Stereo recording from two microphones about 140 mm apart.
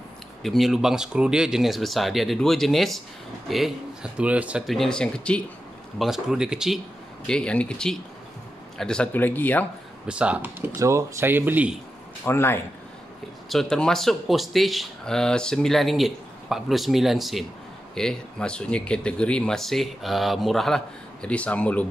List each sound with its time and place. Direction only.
0.4 s speech: centre (ahead or behind)
7.2 s speech: 5° left (ahead or behind)
10.0 s speech: 10° right (ahead or behind)
12.3 s speech: 15° left (ahead or behind)
13.5 s speech: 5° left (ahead or behind)